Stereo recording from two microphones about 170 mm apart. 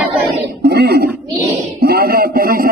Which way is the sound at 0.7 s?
70° right (ahead or behind).